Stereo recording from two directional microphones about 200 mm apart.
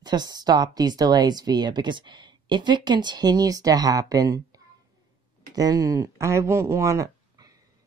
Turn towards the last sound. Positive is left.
turn(degrees=-15)  # may be behind; listen again after turning